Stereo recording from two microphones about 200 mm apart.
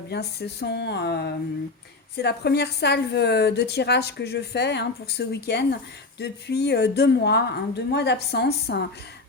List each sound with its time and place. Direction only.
0.1 s a woman's voice: 55° left (ahead or behind)